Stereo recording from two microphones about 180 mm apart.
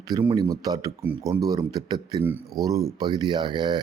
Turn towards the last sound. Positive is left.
turn(degrees=-25)  # may be behind; listen again after turning